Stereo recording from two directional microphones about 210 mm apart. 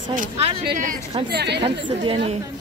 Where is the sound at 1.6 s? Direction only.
25° right (ahead or behind).